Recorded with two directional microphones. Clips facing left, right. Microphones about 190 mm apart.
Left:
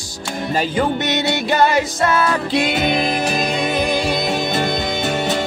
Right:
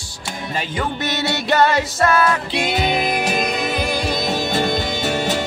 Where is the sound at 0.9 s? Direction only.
20° left (ahead or behind).